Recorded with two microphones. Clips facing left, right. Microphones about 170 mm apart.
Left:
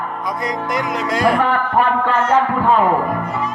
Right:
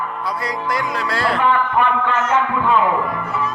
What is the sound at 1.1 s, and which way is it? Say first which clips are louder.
Music: left 6 dB; 15° left (ahead or behind).